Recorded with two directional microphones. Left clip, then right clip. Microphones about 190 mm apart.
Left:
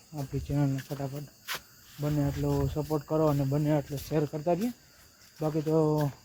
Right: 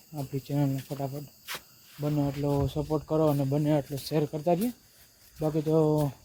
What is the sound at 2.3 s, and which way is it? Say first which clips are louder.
Speech: right 2 dB; centre (ahead or behind).